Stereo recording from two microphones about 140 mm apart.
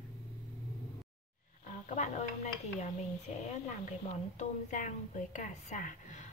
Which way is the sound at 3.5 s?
60° left (ahead or behind).